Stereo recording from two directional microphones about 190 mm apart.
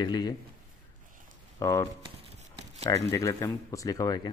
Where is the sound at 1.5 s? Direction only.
15° left (ahead or behind).